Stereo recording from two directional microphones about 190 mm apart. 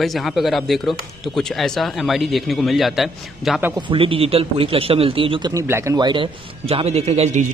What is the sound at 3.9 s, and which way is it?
A man's voice, 30° right (ahead or behind).